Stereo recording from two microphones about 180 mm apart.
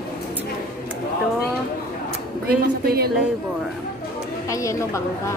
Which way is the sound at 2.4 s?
60° right (ahead or behind).